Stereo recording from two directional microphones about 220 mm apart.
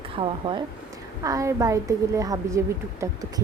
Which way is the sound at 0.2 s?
25° right (ahead or behind).